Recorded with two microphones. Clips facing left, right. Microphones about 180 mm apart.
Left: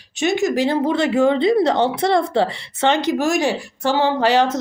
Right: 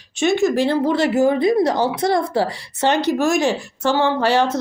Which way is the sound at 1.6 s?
65° left (ahead or behind).